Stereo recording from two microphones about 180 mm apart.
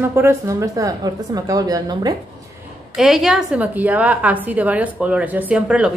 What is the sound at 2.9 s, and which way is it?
A woman's voice, centre (ahead or behind).